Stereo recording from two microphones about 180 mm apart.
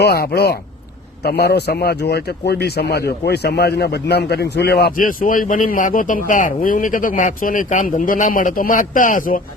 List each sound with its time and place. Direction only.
0.0 s speech: 60° left (ahead or behind)